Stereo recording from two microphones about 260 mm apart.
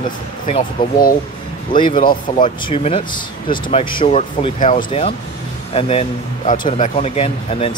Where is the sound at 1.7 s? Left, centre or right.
Centre.